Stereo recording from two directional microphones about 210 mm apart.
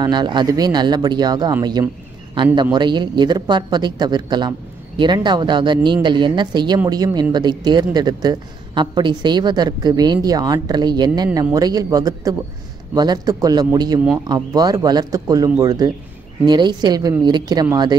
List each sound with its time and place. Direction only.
0.0 s speech: 20° right (ahead or behind)